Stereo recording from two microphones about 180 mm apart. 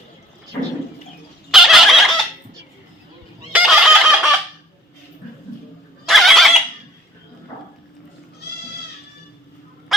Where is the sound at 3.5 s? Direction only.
5° right (ahead or behind).